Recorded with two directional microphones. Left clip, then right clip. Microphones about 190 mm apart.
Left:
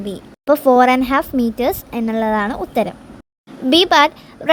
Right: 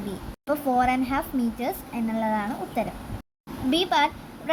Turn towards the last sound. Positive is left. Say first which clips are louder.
# left 10 dB
turn(degrees=50)  # may be behind; listen again after turning